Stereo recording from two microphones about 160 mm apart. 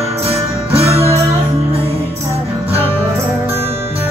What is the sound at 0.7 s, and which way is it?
Music, 35° right (ahead or behind).